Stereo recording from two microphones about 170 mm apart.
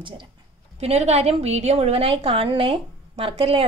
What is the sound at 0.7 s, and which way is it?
A woman's voice, 40° right (ahead or behind).